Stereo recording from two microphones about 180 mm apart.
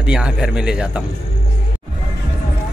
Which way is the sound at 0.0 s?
5° right (ahead or behind).